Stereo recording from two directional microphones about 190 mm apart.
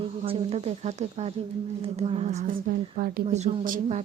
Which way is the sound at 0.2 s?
30° right (ahead or behind).